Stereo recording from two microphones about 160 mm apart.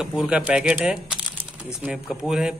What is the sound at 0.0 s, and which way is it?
A man's voice, 5° right (ahead or behind).